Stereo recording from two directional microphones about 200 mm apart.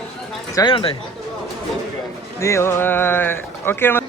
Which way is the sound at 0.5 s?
25° left (ahead or behind).